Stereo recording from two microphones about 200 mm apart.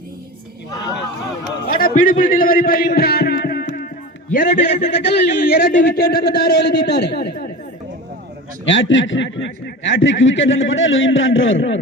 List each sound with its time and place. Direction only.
1.6 s a man's voice: 45° left (ahead or behind)
8.6 s speech: 70° left (ahead or behind)